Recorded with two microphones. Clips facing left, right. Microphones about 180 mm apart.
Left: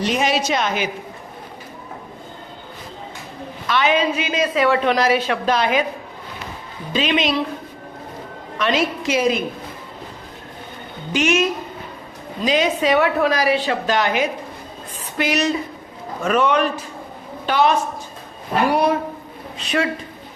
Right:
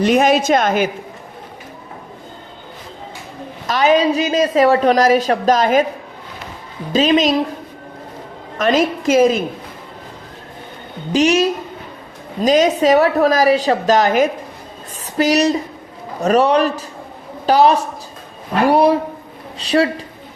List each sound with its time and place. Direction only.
0.0 s a woman's voice: 50° right (ahead or behind)
3.7 s a woman's voice: 40° right (ahead or behind)
6.9 s a woman's voice: 40° right (ahead or behind)
8.5 s a woman's voice: 45° right (ahead or behind)
11.1 s a woman's voice: 35° right (ahead or behind)
18.7 s a sound: 30° right (ahead or behind)
19.5 s a woman's voice: 35° right (ahead or behind)